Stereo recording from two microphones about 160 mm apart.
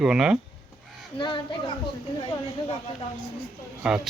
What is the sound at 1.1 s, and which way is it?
Speech, 30° left (ahead or behind).